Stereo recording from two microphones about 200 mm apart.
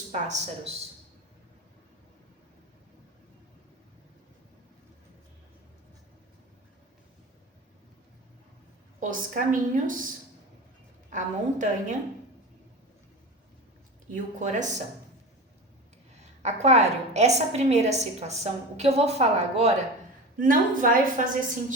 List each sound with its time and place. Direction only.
0.1 s a woman's voice: 35° right (ahead or behind)
9.0 s a woman's voice: 40° right (ahead or behind)
11.1 s a woman's voice: 40° right (ahead or behind)
14.1 s a woman's voice: 40° right (ahead or behind)
16.4 s a woman's voice: 35° right (ahead or behind)